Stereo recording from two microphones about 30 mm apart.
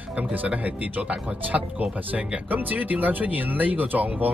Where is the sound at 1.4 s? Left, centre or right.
Right.